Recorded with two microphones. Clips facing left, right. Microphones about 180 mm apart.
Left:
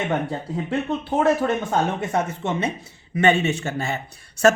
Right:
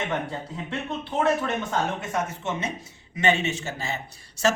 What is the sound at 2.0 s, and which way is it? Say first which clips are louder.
Speech: left 5 dB; 60° left (ahead or behind).